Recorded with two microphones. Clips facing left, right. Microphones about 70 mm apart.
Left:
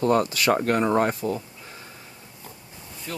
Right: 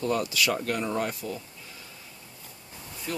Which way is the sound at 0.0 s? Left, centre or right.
Left.